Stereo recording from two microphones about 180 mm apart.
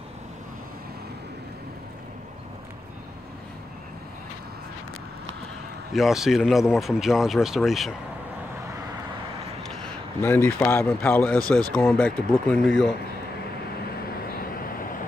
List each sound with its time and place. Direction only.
5.9 s speech: centre (ahead or behind)
10.2 s speech: 10° left (ahead or behind)
14.7 s vehicle: 50° left (ahead or behind)